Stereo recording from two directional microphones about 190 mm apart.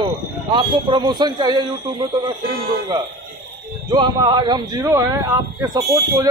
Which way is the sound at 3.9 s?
25° right (ahead or behind).